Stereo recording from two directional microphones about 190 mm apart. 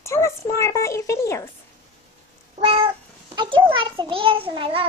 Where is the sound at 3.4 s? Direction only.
25° right (ahead or behind).